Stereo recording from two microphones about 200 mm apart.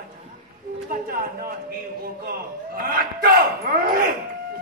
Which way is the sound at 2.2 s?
50° right (ahead or behind).